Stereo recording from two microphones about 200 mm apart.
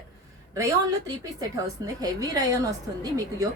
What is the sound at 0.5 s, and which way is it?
A woman's voice, 15° right (ahead or behind).